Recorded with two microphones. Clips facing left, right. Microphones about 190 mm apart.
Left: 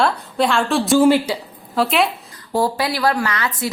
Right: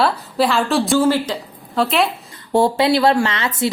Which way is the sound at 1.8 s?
Centre (ahead or behind).